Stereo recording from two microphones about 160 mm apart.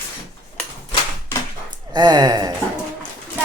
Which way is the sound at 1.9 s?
25° right (ahead or behind).